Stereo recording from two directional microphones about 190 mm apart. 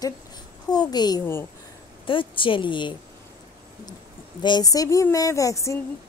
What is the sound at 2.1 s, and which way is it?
Speech, 25° left (ahead or behind).